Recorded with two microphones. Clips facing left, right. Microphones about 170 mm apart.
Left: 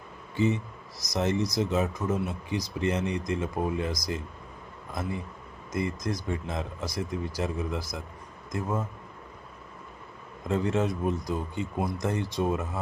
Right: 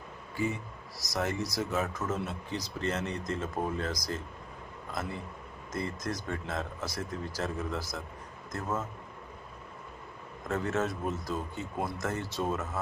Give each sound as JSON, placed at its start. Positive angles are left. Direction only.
{"t": 0.3, "sound": "a man's voice", "side_deg": 20}
{"t": 5.7, "sound": "speech", "side_deg": 10}
{"t": 10.5, "sound": "speech", "side_deg": 15}